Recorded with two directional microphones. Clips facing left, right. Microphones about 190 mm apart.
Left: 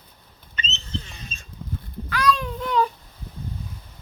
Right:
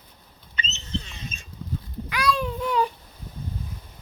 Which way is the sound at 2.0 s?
10° right (ahead or behind).